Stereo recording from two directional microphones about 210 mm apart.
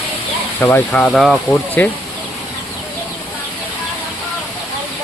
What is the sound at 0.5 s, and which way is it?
Speech, 10° left (ahead or behind).